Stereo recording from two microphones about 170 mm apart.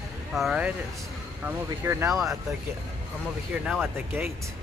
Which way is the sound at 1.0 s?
15° right (ahead or behind).